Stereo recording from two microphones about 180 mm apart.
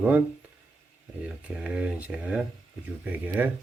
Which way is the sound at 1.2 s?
5° right (ahead or behind).